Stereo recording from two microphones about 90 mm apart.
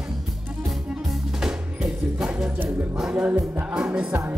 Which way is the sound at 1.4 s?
5° right (ahead or behind).